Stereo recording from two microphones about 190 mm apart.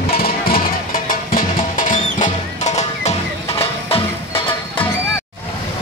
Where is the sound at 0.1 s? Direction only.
50° left (ahead or behind); by 4.0 s 30° left (ahead or behind).